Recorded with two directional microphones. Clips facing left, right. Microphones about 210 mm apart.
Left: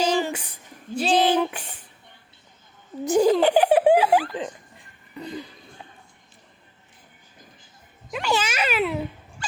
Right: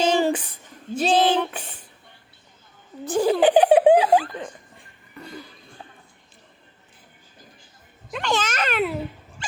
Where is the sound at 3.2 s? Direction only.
15° right (ahead or behind).